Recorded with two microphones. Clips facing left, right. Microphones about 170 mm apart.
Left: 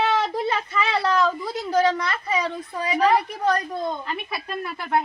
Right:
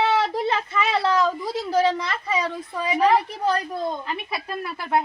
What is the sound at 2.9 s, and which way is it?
A woman's voice, 25° right (ahead or behind).